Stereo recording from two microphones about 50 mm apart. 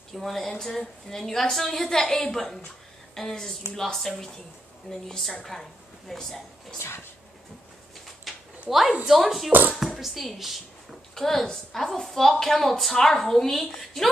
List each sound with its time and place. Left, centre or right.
0.1 s a woman's voice: centre
8.3 s a sound: centre
8.6 s a woman's voice: centre
9.5 s speech: right
9.8 s a woman's voice: centre
11.1 s a woman's voice: centre